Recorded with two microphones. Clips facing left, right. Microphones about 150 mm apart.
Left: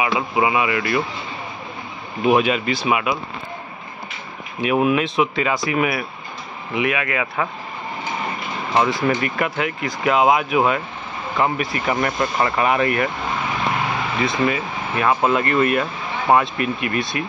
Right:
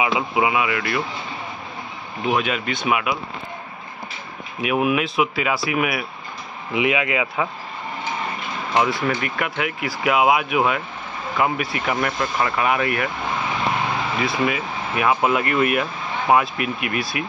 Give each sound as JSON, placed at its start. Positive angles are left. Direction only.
{"t": 0.0, "sound": "speech", "side_deg": -15}
{"t": 2.2, "sound": "speech", "side_deg": 5}
{"t": 4.6, "sound": "speech", "side_deg": -5}
{"t": 6.7, "sound": "speech", "side_deg": -15}
{"t": 8.7, "sound": "speech", "side_deg": 0}
{"t": 14.2, "sound": "speech", "side_deg": -5}